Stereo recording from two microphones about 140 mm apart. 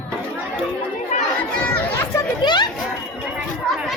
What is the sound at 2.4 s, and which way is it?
Speech, 30° left (ahead or behind).